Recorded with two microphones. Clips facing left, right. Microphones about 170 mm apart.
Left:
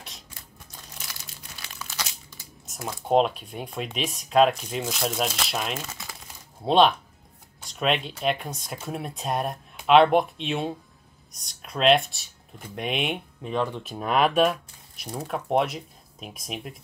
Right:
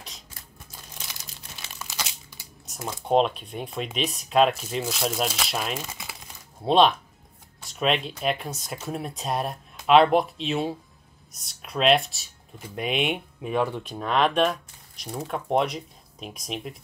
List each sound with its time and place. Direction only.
2.6 s speech: centre (ahead or behind)
5.9 s crumpling: 15° right (ahead or behind)
6.6 s speech: centre (ahead or behind)
7.6 s a sound: centre (ahead or behind)
8.2 s speech: centre (ahead or behind)
13.8 s speech: 5° left (ahead or behind)